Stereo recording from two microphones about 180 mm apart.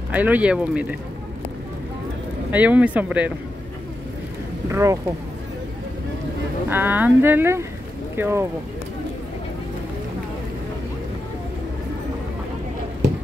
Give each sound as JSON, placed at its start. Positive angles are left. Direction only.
{"t": 0.1, "sound": "speech", "side_deg": -10}
{"t": 2.5, "sound": "speech", "side_deg": -10}
{"t": 4.6, "sound": "speech", "side_deg": -15}
{"t": 6.7, "sound": "speech", "side_deg": -10}